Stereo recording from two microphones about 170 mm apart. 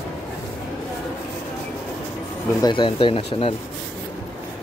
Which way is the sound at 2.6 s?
30° left (ahead or behind).